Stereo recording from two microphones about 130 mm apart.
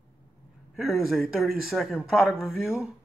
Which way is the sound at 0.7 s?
Centre (ahead or behind).